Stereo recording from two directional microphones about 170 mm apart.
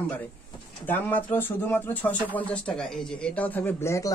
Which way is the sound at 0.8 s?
10° left (ahead or behind).